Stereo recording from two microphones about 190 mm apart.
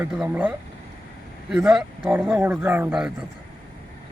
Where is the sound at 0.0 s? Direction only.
10° right (ahead or behind).